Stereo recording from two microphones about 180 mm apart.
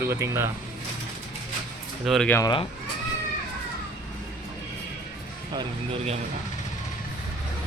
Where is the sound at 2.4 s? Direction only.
25° left (ahead or behind).